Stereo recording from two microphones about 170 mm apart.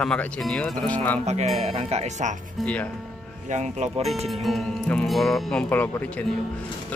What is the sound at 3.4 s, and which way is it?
Speech, 45° right (ahead or behind).